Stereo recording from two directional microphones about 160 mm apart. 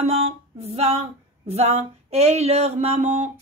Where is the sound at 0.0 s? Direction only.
40° right (ahead or behind).